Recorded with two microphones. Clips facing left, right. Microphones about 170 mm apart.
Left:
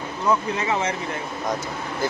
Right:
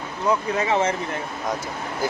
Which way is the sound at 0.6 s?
30° right (ahead or behind).